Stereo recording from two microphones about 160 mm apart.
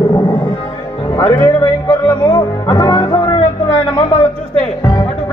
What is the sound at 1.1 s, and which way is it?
Speech, 20° left (ahead or behind).